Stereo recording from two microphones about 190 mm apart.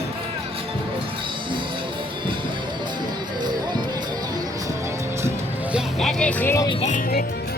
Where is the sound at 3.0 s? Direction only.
20° right (ahead or behind); by 6.7 s 10° left (ahead or behind).